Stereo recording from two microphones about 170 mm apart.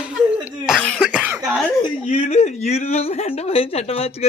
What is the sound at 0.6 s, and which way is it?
Cough, 5° right (ahead or behind).